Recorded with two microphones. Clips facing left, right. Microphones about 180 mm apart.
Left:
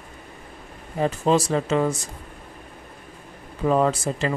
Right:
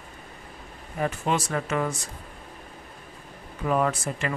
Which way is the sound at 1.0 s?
30° left (ahead or behind).